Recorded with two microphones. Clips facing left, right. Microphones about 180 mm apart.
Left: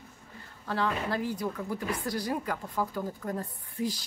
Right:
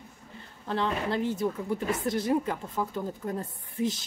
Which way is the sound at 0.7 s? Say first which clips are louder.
Right 1 dB; 25° right (ahead or behind).